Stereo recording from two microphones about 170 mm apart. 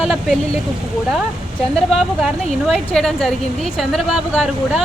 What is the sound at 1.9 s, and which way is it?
A woman's voice, centre (ahead or behind).